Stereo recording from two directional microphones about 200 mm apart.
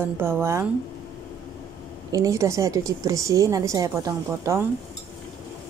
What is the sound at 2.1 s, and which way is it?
A woman's voice, 15° right (ahead or behind).